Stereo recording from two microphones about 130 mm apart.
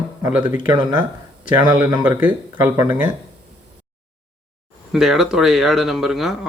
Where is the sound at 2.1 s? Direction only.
15° right (ahead or behind).